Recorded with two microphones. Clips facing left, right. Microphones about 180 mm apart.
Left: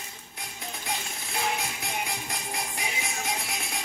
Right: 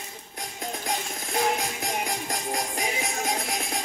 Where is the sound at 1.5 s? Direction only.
45° right (ahead or behind).